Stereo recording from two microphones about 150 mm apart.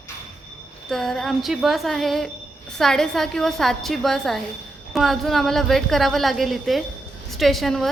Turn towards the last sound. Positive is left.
turn(degrees=0)  # may be behind; listen again after turning